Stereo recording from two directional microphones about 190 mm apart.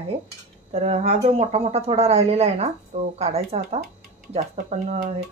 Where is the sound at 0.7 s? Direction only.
30° right (ahead or behind).